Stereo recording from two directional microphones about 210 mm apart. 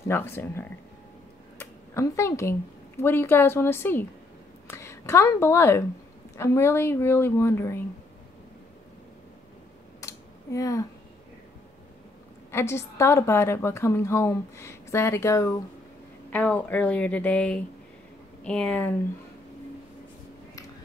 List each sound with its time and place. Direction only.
0.1 s a woman's voice: 10° left (ahead or behind)
9.9 s a sound: 15° left (ahead or behind)
12.4 s a woman's voice: 10° left (ahead or behind)